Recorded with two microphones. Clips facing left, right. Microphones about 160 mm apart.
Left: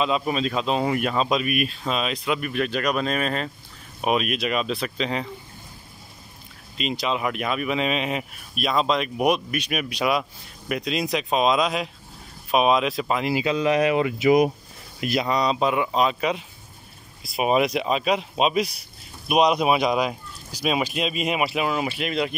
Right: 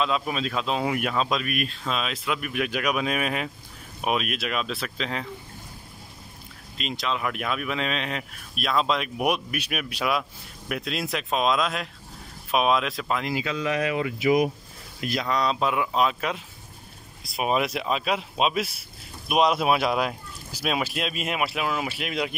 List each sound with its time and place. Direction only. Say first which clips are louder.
0.0 s speech: left 3 dB; centre (ahead or behind)
6.8 s speech: left 3 dB; centre (ahead or behind); by 14.5 s 20° left (ahead or behind)
15.0 s speech: left 3 dB; 10° left (ahead or behind)